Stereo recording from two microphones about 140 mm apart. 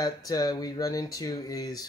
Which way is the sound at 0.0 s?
25° left (ahead or behind).